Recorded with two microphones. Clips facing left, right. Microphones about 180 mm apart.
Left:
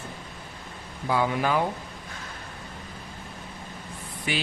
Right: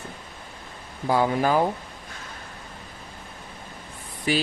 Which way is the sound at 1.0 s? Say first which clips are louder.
Right 3 dB; 40° right (ahead or behind).